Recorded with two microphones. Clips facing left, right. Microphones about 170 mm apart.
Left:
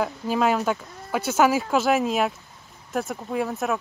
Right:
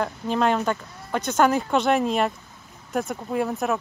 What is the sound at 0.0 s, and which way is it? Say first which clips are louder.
Speech: even; 5° left (ahead or behind).